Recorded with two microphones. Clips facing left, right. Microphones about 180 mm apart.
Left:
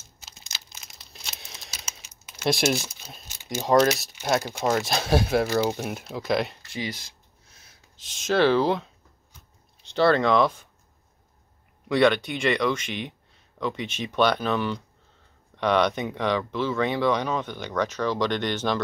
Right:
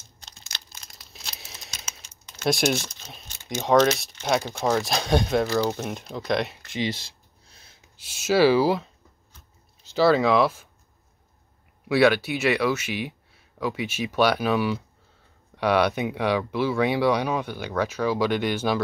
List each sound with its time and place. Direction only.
0.5 s crumpling: 5° left (ahead or behind)
5.5 s speech: 15° left (ahead or behind)
6.7 s speech: 25° right (ahead or behind)
8.0 s speech: 10° right (ahead or behind)
11.9 s speech: 5° right (ahead or behind)